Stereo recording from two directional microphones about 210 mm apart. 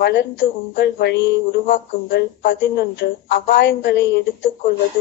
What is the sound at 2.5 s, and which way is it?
A woman's voice, 55° left (ahead or behind).